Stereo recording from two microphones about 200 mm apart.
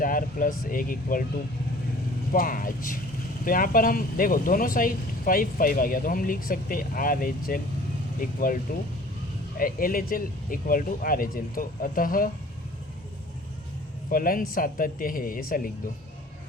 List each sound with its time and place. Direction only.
0.0 s speech: 45° left (ahead or behind)
2.3 s speech: 45° left (ahead or behind)
9.6 s speech: 45° left (ahead or behind)
14.1 s speech: 45° left (ahead or behind)